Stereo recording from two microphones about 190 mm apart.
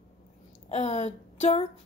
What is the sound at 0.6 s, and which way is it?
Speech, 35° left (ahead or behind).